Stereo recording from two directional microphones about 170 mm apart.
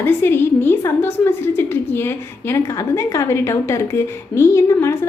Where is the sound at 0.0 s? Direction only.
10° left (ahead or behind).